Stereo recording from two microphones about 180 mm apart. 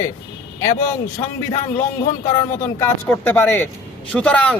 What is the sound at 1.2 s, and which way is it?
Speech, 30° left (ahead or behind).